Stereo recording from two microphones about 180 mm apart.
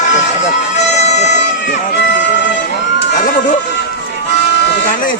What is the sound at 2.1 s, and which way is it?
Music, 70° left (ahead or behind).